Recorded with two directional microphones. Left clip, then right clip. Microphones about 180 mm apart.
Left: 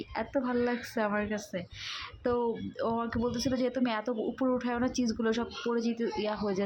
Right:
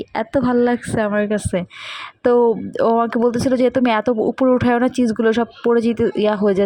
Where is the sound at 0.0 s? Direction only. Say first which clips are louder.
Right 13 dB; 35° right (ahead or behind).